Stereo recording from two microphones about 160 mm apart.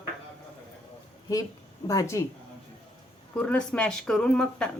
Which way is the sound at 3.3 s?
5° left (ahead or behind).